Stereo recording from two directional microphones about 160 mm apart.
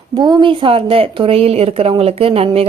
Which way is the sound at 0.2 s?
25° right (ahead or behind).